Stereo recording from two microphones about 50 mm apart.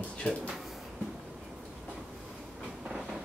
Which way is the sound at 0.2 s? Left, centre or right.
Left.